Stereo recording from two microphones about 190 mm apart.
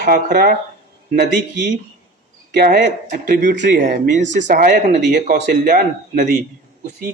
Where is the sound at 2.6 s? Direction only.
45° right (ahead or behind).